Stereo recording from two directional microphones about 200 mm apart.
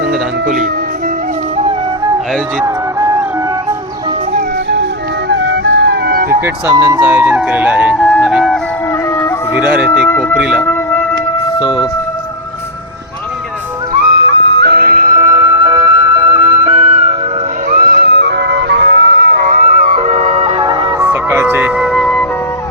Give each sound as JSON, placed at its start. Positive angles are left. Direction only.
{"t": 2.6, "sound": "music", "side_deg": -15}
{"t": 5.3, "sound": "music", "side_deg": -70}
{"t": 6.4, "sound": "speech", "side_deg": -15}
{"t": 8.9, "sound": "music", "side_deg": 10}
{"t": 9.6, "sound": "speech", "side_deg": -5}
{"t": 10.1, "sound": "speech", "side_deg": 10}
{"t": 10.3, "sound": "speech", "side_deg": -5}
{"t": 10.6, "sound": "music", "side_deg": 10}
{"t": 11.6, "sound": "speech", "side_deg": 20}
{"t": 14.3, "sound": "music", "side_deg": -65}
{"t": 17.7, "sound": "music", "side_deg": -45}
{"t": 19.4, "sound": "music", "side_deg": -50}